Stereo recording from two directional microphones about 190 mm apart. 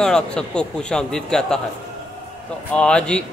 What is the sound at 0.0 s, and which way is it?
A man's voice, 5° left (ahead or behind).